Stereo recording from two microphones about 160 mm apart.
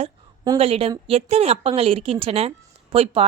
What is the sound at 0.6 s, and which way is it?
A woman's voice, 40° right (ahead or behind).